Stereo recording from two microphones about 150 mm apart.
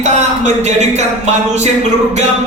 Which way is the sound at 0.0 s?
50° right (ahead or behind).